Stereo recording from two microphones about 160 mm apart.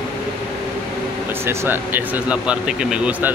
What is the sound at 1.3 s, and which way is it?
Speech, 15° right (ahead or behind).